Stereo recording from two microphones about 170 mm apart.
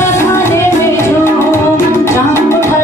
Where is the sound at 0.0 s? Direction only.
15° left (ahead or behind).